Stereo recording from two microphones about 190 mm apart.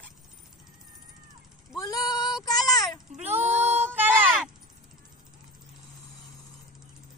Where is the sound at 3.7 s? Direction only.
10° right (ahead or behind).